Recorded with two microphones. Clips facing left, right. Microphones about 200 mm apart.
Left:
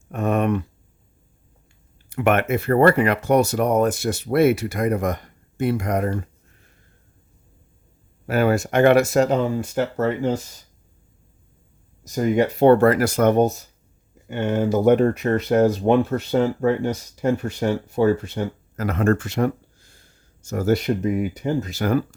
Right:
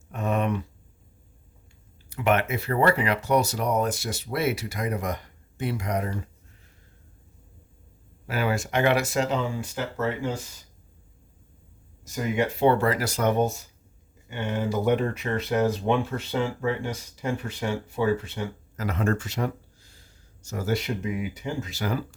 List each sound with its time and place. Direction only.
0.1 s a sound: 55° left (ahead or behind)
2.0 s speech: 55° left (ahead or behind)
8.3 s speech: 50° left (ahead or behind)
12.0 s speech: 40° left (ahead or behind)